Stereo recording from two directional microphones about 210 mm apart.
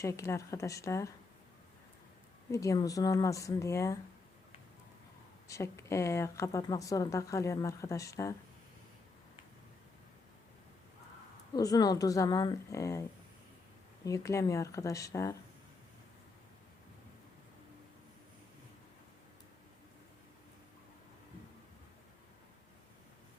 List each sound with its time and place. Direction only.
0.0 s speech: 15° left (ahead or behind)
2.5 s speech: 15° left (ahead or behind)
5.5 s speech: 15° left (ahead or behind)
11.5 s speech: 15° left (ahead or behind)